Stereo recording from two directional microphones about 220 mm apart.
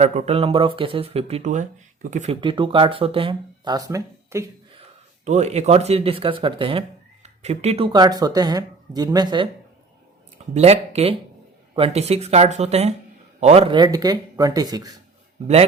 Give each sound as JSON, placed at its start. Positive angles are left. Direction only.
{"t": 0.0, "sound": "speech", "side_deg": -30}
{"t": 5.2, "sound": "speech", "side_deg": -30}
{"t": 10.5, "sound": "speech", "side_deg": -30}